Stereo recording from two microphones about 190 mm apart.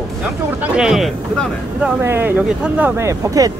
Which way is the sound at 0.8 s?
Centre (ahead or behind).